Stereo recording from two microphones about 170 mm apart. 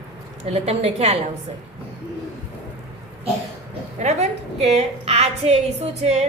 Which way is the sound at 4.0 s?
40° right (ahead or behind).